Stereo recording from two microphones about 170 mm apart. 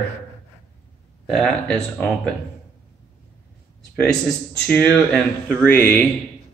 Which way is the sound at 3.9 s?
5° left (ahead or behind).